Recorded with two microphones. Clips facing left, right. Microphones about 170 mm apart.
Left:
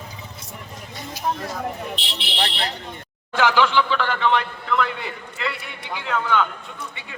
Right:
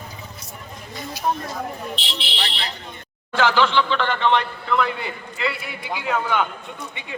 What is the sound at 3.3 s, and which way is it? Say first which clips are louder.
A man's voice: even; 10° left (ahead or behind).